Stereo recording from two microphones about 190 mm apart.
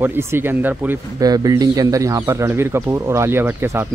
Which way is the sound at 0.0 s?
10° right (ahead or behind).